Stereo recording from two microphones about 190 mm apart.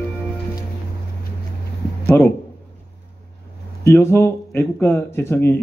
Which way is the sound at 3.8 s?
15° left (ahead or behind).